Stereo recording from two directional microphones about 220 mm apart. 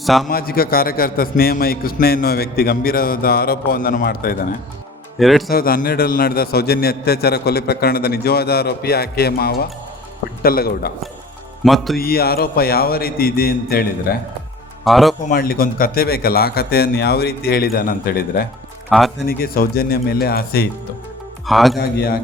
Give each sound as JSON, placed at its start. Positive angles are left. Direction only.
{"t": 0.0, "sound": "a man's voice", "side_deg": 0}
{"t": 0.3, "sound": "a man's voice", "side_deg": 40}
{"t": 5.2, "sound": "speech", "side_deg": 0}
{"t": 5.5, "sound": "a man's voice", "side_deg": 40}
{"t": 11.6, "sound": "speech", "side_deg": 0}
{"t": 11.9, "sound": "a man's voice", "side_deg": 45}
{"t": 14.8, "sound": "speech", "side_deg": 0}
{"t": 15.3, "sound": "a man's voice", "side_deg": 40}
{"t": 18.9, "sound": "speech", "side_deg": 0}
{"t": 19.3, "sound": "a man's voice", "side_deg": 45}
{"t": 21.4, "sound": "speech", "side_deg": 0}
{"t": 21.8, "sound": "a man's voice", "side_deg": 45}